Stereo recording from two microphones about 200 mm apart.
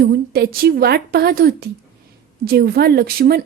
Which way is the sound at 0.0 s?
50° right (ahead or behind).